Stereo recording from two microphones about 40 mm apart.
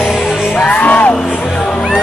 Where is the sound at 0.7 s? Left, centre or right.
Left.